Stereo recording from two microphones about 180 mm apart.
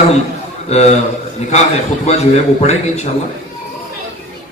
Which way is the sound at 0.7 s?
40° left (ahead or behind).